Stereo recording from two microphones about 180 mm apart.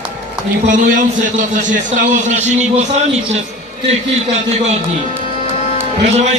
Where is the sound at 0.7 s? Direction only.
45° right (ahead or behind).